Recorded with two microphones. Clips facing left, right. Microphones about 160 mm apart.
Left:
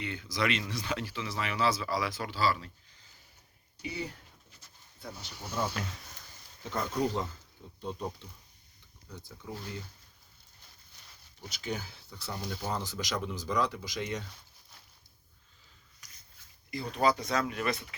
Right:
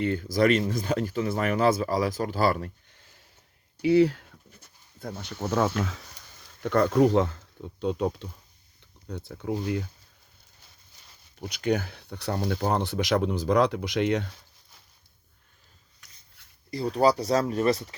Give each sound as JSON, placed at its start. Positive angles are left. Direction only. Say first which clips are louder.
{"t": 0.0, "sound": "speech", "louder": "right 10 dB", "side_deg": -45}
{"t": 3.8, "sound": "speech", "louder": "right 19 dB", "side_deg": -85}
{"t": 6.6, "sound": "speech", "louder": "right 11 dB", "side_deg": -65}
{"t": 9.0, "sound": "speech", "louder": "right 12 dB", "side_deg": -65}
{"t": 11.5, "sound": "speech", "louder": "right 11 dB", "side_deg": -60}
{"t": 16.0, "sound": "a sound", "louder": "even", "side_deg": 0}
{"t": 16.9, "sound": "speech", "louder": "right 6 dB", "side_deg": -35}